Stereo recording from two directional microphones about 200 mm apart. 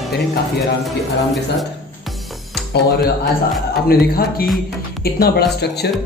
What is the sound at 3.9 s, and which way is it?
Speech, 50° left (ahead or behind).